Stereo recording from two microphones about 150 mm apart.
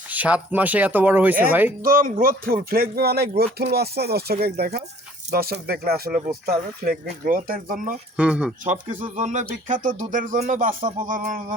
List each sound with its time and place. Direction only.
0.1 s speech: 10° right (ahead or behind)
1.8 s speech: 70° right (ahead or behind); by 6.9 s 85° right
7.3 s speech: 70° right (ahead or behind)
8.1 s speech: 5° right (ahead or behind)
8.6 s speech: 50° right (ahead or behind)